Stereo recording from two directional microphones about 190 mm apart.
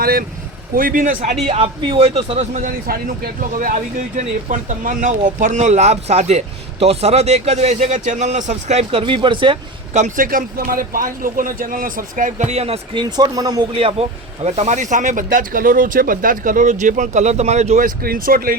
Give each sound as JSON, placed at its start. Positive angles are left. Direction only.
{"t": 0.0, "sound": "speech", "side_deg": -50}
{"t": 1.5, "sound": "speech", "side_deg": -30}
{"t": 9.9, "sound": "speech", "side_deg": -45}
{"t": 13.8, "sound": "speech", "side_deg": -30}